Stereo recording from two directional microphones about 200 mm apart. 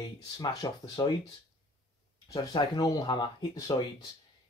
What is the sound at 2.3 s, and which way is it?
Speech, 20° left (ahead or behind).